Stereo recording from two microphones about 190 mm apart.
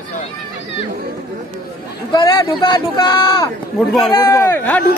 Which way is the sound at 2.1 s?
25° left (ahead or behind).